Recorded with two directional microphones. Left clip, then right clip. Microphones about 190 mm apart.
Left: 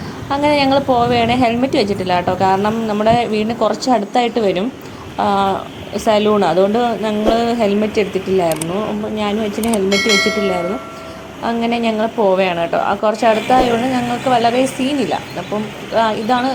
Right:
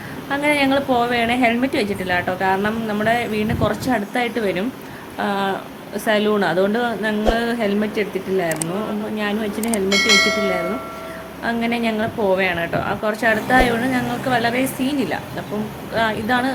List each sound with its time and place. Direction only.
0.3 s a woman's voice: 15° left (ahead or behind)
9.7 s speech: centre (ahead or behind)
11.4 s a woman's voice: 15° left (ahead or behind)